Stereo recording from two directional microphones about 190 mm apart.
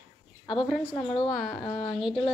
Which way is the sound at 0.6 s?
Centre (ahead or behind).